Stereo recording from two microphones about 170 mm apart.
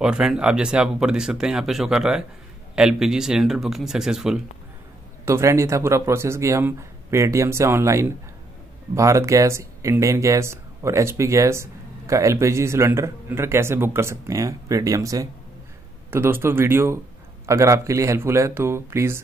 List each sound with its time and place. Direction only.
0.0 s speech: 5° right (ahead or behind)
5.2 s speech: 15° right (ahead or behind)